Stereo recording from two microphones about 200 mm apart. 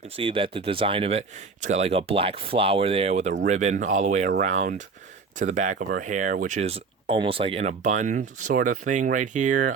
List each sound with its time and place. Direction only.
0.2 s speech: 25° right (ahead or behind)